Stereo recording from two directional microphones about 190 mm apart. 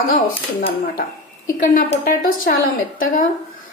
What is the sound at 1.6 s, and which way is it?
Speech, 45° left (ahead or behind).